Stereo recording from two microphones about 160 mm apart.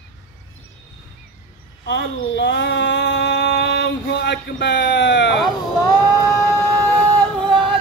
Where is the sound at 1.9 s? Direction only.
90° left.